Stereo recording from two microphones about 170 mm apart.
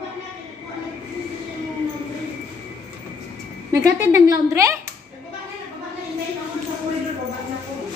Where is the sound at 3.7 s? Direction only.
20° right (ahead or behind).